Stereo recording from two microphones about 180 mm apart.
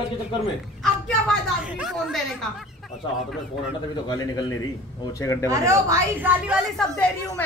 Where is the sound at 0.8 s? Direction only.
Centre (ahead or behind).